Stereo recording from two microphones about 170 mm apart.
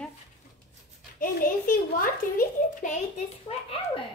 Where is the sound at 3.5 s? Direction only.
35° left (ahead or behind).